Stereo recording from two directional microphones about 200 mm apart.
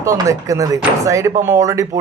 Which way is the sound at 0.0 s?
15° right (ahead or behind).